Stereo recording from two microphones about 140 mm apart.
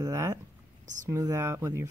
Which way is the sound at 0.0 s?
20° right (ahead or behind).